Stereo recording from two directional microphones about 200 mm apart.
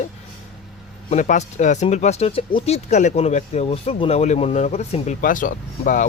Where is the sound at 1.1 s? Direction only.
35° left (ahead or behind).